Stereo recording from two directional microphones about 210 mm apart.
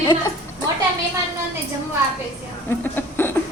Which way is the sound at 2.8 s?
10° left (ahead or behind).